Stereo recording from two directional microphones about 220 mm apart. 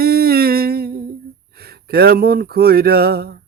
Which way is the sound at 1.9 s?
45° right (ahead or behind).